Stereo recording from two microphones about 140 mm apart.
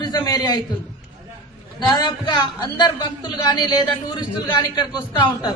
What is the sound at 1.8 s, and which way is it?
A man's voice, 30° left (ahead or behind).